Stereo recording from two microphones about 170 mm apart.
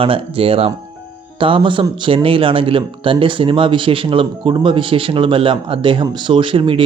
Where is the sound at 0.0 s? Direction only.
30° right (ahead or behind).